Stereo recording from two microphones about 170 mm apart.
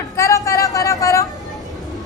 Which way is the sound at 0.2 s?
20° left (ahead or behind).